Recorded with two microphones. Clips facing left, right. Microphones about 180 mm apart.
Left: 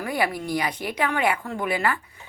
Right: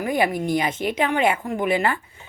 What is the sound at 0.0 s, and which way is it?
A woman's voice, 20° right (ahead or behind).